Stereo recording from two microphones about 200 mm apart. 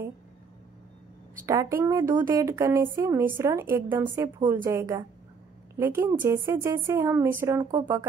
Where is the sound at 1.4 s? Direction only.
15° right (ahead or behind).